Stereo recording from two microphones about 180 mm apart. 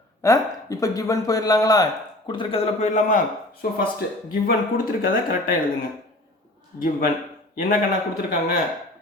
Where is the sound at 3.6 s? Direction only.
55° left (ahead or behind).